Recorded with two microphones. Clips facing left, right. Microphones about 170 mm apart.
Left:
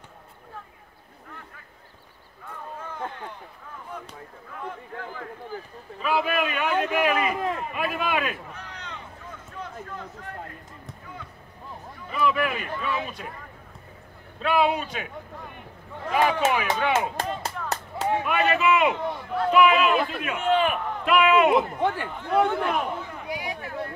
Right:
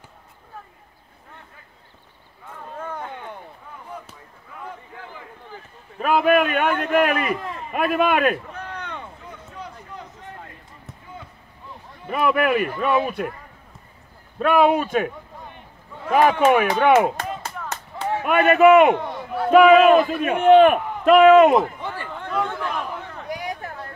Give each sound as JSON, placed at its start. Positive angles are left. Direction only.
{"t": 5.9, "sound": "a sound", "side_deg": -55}
{"t": 12.1, "sound": "speech", "side_deg": -60}
{"t": 14.4, "sound": "a man's voice", "side_deg": -50}
{"t": 16.1, "sound": "a man's voice", "side_deg": -50}
{"t": 18.2, "sound": "a man's voice", "side_deg": -55}
{"t": 21.7, "sound": "run", "side_deg": 55}
{"t": 22.4, "sound": "a man's voice", "side_deg": 65}
{"t": 23.2, "sound": "a sound", "side_deg": -45}